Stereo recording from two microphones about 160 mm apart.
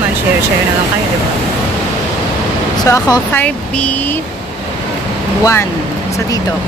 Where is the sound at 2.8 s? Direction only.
20° left (ahead or behind).